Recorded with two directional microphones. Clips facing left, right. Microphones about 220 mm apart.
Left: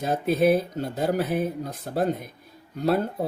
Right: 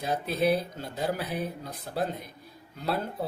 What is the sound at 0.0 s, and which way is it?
Speech, 45° left (ahead or behind).